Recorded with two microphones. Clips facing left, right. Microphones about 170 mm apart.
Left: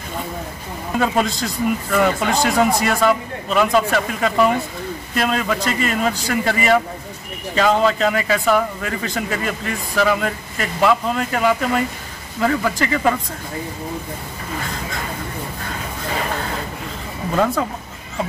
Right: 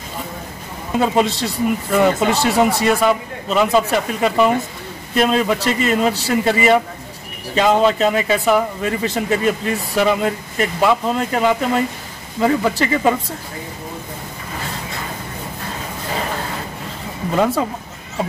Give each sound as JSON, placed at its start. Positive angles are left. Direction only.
{"t": 0.9, "sound": "speech", "side_deg": -20}